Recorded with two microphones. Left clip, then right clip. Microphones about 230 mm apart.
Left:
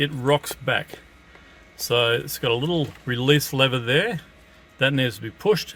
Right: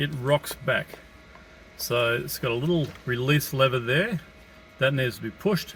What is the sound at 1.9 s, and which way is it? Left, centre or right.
Speech, left.